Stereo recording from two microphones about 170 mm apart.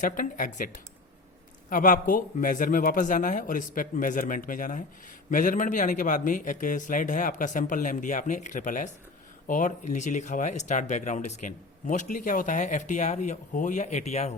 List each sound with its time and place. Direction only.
0.0 s speech: 50° left (ahead or behind)
1.7 s speech: 50° left (ahead or behind)